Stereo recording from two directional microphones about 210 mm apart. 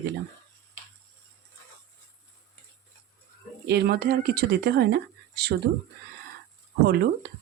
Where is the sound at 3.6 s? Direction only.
50° right (ahead or behind).